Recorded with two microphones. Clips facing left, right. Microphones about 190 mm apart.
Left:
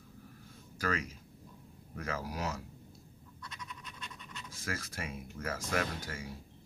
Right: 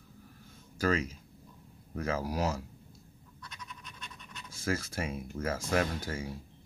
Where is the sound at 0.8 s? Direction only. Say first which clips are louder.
Right 6 dB; 30° right (ahead or behind).